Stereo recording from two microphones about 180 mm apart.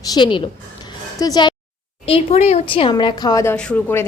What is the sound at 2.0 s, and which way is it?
A woman's voice, 35° left (ahead or behind).